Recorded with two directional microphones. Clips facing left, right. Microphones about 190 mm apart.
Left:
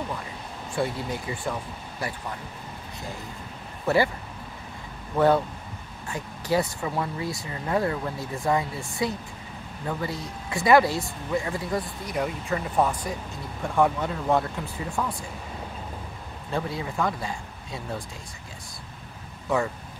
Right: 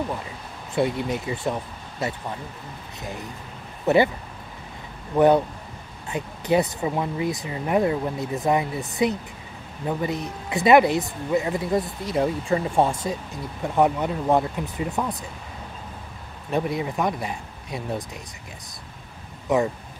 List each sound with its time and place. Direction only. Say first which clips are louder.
0.7 s speech: right 5 dB; 20° right (ahead or behind)
3.8 s speech: right 4 dB; 20° right (ahead or behind)
5.1 s speech: right 4 dB; 20° right (ahead or behind)
16.4 s speech: right 5 dB; 20° right (ahead or behind)
19.5 s speech: right 4 dB; 20° right (ahead or behind)